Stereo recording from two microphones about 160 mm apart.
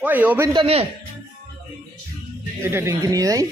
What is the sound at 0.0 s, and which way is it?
Speech, 10° right (ahead or behind).